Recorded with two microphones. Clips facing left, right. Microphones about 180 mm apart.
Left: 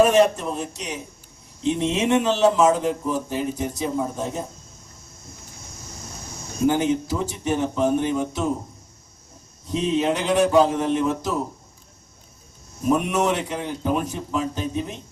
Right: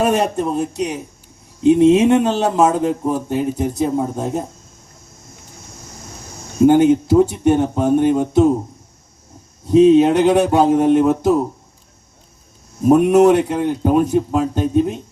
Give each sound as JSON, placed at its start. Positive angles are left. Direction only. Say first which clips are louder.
{"t": 0.3, "sound": "speech", "louder": "right 10 dB", "side_deg": -60}
{"t": 6.7, "sound": "speech", "louder": "right 9 dB", "side_deg": -60}
{"t": 9.7, "sound": "speech", "louder": "right 12 dB", "side_deg": -60}
{"t": 12.9, "sound": "speech", "louder": "right 10 dB", "side_deg": -60}